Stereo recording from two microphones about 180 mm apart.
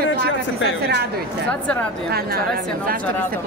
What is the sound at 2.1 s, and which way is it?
Speech, 60° right (ahead or behind).